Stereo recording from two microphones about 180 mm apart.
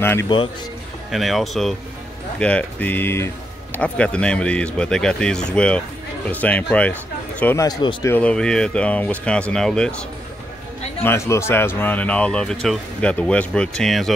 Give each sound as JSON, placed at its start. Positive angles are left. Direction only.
{"t": 0.0, "sound": "speech", "side_deg": 15}
{"t": 1.1, "sound": "speech", "side_deg": 0}
{"t": 7.6, "sound": "speech", "side_deg": 25}
{"t": 8.1, "sound": "speech", "side_deg": 5}
{"t": 11.0, "sound": "speech", "side_deg": 15}